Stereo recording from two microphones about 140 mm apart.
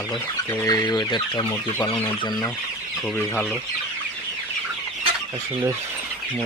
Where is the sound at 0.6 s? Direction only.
25° left (ahead or behind).